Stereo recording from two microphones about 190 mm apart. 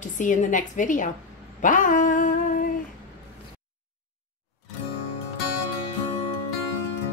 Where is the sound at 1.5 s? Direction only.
45° left (ahead or behind).